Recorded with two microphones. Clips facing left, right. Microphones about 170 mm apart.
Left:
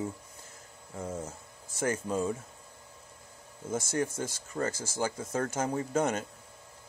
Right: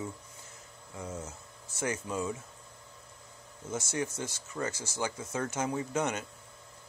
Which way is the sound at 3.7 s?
50° left (ahead or behind).